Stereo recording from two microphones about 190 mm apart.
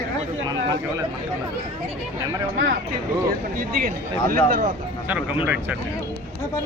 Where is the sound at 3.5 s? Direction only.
50° right (ahead or behind).